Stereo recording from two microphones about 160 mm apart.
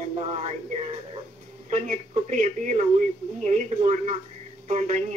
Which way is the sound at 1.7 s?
50° right (ahead or behind).